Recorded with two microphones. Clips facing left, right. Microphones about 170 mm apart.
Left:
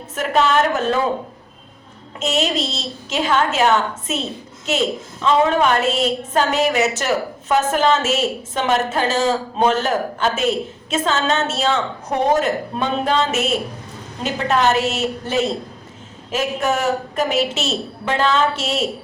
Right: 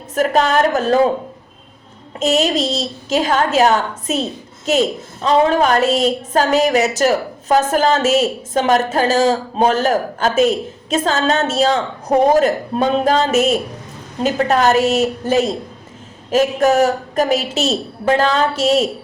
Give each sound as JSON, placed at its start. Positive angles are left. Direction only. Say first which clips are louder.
{"t": 0.1, "sound": "a woman's voice", "louder": "right 3 dB", "side_deg": -40}
{"t": 2.1, "sound": "a woman's voice", "louder": "right 5 dB", "side_deg": -40}